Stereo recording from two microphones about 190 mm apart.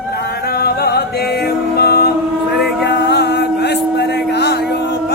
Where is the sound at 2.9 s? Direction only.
65° left (ahead or behind).